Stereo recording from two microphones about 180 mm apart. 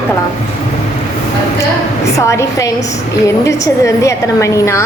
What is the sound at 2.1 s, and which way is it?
A woman's voice, 15° left (ahead or behind).